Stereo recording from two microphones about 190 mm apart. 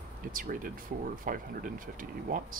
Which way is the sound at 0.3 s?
45° right (ahead or behind).